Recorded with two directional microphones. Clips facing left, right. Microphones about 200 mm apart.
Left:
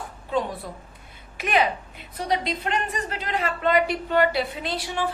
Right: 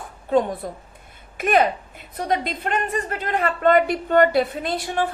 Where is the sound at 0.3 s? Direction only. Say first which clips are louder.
Right 6 dB; 50° right (ahead or behind).